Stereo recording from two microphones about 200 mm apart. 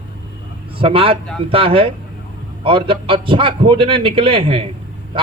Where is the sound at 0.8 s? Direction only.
25° right (ahead or behind).